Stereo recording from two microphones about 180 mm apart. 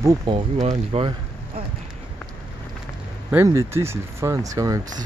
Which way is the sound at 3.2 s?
15° right (ahead or behind).